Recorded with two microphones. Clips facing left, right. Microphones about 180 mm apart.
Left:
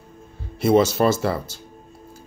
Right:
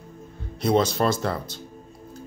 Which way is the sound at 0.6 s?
5° left (ahead or behind).